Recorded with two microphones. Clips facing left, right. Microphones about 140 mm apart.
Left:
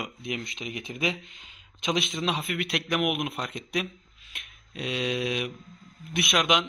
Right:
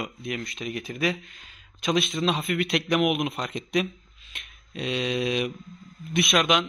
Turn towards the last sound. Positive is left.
turn(degrees=15)  # may be behind; listen again after turning